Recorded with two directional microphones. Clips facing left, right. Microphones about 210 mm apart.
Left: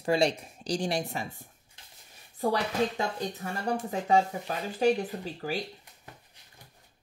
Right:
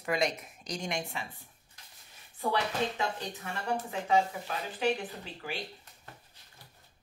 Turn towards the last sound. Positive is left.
turn(degrees=40)  # may be behind; listen again after turning